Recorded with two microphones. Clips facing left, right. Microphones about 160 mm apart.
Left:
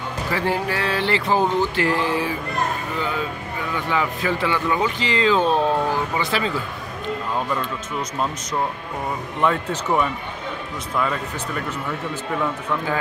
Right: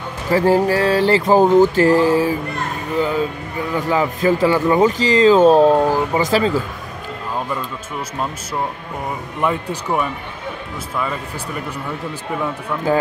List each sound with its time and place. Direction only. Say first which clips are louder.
0.3 s speech: right 9 dB; 40° right (ahead or behind)
3.7 s speech: right 5 dB; 40° right (ahead or behind)
9.4 s speech: even; 10° right (ahead or behind)